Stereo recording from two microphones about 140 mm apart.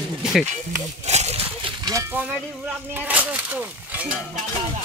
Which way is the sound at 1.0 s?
50° right (ahead or behind).